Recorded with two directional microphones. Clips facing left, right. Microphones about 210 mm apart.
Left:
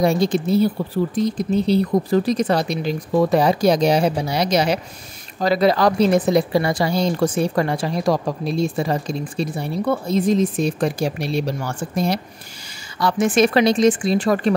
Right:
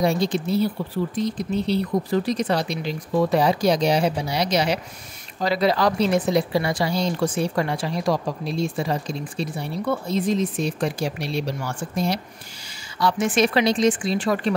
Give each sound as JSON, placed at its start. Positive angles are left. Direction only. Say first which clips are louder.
{"t": 0.0, "sound": "a woman's voice", "louder": "left 4 dB", "side_deg": 45}